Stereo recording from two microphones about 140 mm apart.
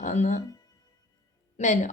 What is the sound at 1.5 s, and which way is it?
Speech, 60° left (ahead or behind).